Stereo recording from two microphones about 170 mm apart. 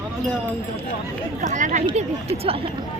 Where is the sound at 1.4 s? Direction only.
50° right (ahead or behind).